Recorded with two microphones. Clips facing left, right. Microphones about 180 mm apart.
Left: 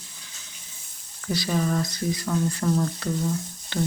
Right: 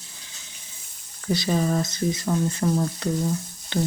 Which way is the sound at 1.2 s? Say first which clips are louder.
Right 2 dB; 25° right (ahead or behind).